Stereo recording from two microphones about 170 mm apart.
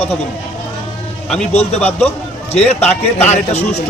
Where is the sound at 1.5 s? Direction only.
40° left (ahead or behind).